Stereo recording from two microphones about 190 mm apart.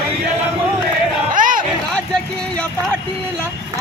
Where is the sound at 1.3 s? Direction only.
45° right (ahead or behind).